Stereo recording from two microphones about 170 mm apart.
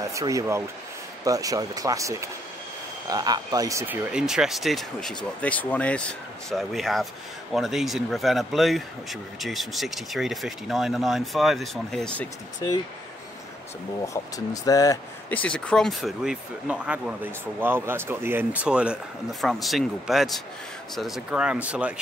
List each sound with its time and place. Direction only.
0.1 s speech: 20° right (ahead or behind); by 12.3 s 5° left (ahead or behind)
12.6 s speech: 20° left (ahead or behind)
14.0 s speech: 20° left (ahead or behind)
15.2 s speech: 10° left (ahead or behind)